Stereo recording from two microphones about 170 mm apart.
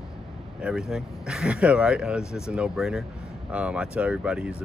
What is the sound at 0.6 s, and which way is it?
Speech, 5° right (ahead or behind).